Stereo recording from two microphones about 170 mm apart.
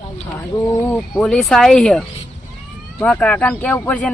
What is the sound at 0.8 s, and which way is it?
Speech, 10° left (ahead or behind).